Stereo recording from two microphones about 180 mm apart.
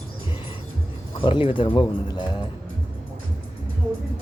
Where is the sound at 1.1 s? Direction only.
30° left (ahead or behind).